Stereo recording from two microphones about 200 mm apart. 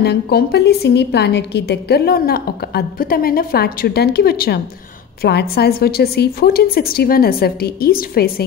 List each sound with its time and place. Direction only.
0.0 s a woman's voice: 55° left (ahead or behind)